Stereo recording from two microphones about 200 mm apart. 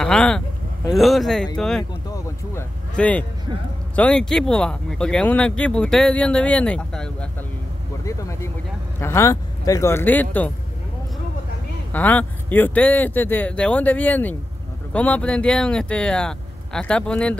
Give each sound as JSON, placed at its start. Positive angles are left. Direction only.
{"t": 0.0, "sound": "vehicle", "side_deg": 5}
{"t": 0.8, "sound": "speech", "side_deg": 0}
{"t": 2.0, "sound": "a sound", "side_deg": 15}
{"t": 3.0, "sound": "speech", "side_deg": 5}
{"t": 8.0, "sound": "speech", "side_deg": 15}
{"t": 11.9, "sound": "speech", "side_deg": 10}